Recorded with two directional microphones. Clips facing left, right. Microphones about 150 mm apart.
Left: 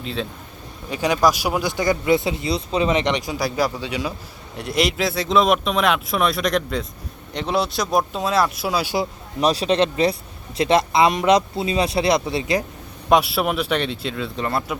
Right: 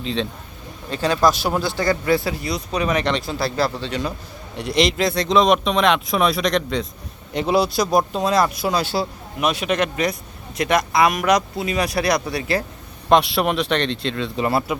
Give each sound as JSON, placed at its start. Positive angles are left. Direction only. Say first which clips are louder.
{"t": 0.0, "sound": "speech", "louder": "right 3 dB", "side_deg": 5}
{"t": 9.4, "sound": "speech", "louder": "left 2 dB", "side_deg": 35}
{"t": 13.1, "sound": "speech", "louder": "right 1 dB", "side_deg": 5}
{"t": 14.3, "sound": "speech", "louder": "right 5 dB", "side_deg": -5}